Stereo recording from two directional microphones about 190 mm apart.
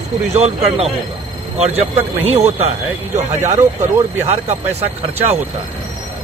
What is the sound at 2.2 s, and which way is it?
Speech, 35° right (ahead or behind).